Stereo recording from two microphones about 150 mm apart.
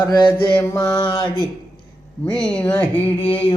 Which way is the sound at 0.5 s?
15° left (ahead or behind).